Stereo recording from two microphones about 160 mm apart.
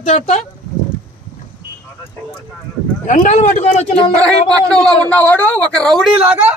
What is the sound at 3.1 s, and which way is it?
A man's voice, 50° left (ahead or behind).